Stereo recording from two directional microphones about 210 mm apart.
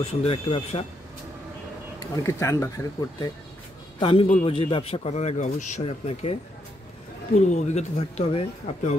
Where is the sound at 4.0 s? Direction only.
25° left (ahead or behind).